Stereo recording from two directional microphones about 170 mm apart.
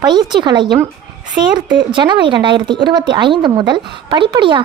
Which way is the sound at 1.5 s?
5° right (ahead or behind).